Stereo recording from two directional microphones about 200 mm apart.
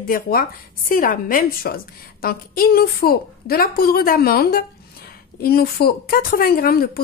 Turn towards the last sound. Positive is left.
turn(degrees=50)  # may be behind; listen again after turning